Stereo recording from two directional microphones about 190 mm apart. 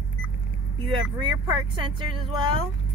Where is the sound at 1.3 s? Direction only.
25° right (ahead or behind).